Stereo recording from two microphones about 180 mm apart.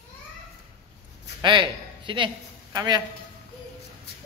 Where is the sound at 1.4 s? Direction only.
25° right (ahead or behind).